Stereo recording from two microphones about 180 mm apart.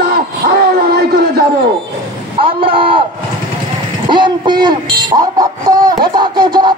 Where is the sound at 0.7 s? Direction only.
60° right (ahead or behind).